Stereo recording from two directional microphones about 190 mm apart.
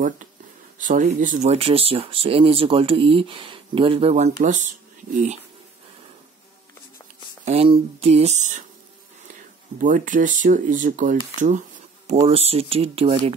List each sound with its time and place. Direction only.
0.7 s speech: 40° right (ahead or behind)
7.4 s speech: 30° right (ahead or behind)
9.8 s speech: 45° right (ahead or behind)